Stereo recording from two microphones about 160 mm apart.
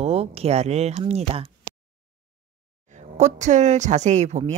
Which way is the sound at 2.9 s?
45° right (ahead or behind).